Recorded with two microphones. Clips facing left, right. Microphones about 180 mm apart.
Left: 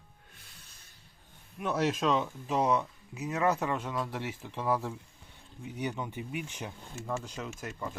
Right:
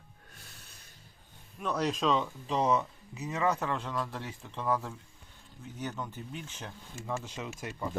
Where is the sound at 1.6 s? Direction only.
5° left (ahead or behind).